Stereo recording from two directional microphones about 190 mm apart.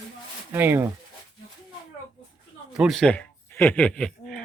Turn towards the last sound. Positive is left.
turn(degrees=5)  # may be behind; listen again after turning